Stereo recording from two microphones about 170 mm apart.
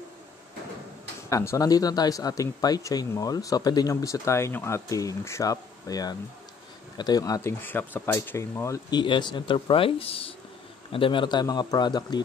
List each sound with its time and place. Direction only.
1.3 s speech: 15° left (ahead or behind)